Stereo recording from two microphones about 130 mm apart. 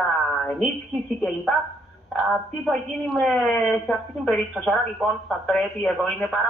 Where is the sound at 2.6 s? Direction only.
Centre (ahead or behind).